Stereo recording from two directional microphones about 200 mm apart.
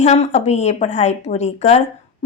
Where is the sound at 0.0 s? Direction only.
35° left (ahead or behind).